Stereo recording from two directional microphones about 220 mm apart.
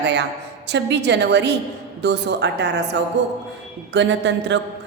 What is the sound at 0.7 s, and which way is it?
A man's voice, 50° right (ahead or behind).